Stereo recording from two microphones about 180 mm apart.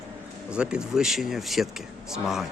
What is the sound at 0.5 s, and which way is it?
Speech, 5° right (ahead or behind).